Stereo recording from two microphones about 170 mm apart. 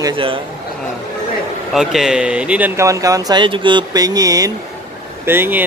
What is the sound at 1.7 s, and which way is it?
Speech, centre (ahead or behind).